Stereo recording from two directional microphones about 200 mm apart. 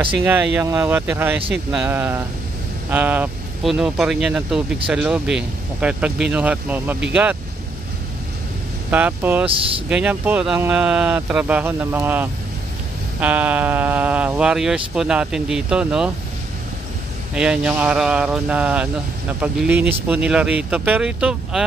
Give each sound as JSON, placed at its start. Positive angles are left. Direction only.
{"t": 0.0, "sound": "speech", "side_deg": -10}
{"t": 8.9, "sound": "speech", "side_deg": -10}
{"t": 9.5, "sound": "speech", "side_deg": -25}
{"t": 9.8, "sound": "speech", "side_deg": -5}
{"t": 17.4, "sound": "speech", "side_deg": -5}